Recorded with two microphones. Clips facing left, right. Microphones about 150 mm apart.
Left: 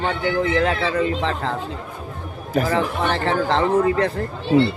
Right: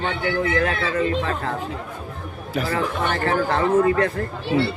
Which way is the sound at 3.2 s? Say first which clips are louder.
Even; 25° left (ahead or behind).